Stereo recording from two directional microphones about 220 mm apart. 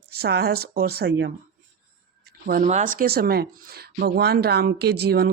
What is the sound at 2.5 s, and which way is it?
Speech, 35° right (ahead or behind).